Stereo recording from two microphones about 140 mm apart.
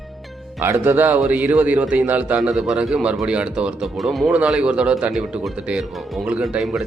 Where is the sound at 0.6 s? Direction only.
15° right (ahead or behind).